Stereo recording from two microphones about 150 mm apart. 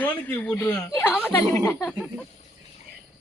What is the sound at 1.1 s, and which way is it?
Speech, 5° left (ahead or behind).